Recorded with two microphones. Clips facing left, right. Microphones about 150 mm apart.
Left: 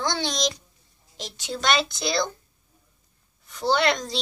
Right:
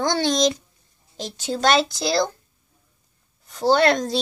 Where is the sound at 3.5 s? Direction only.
45° right (ahead or behind).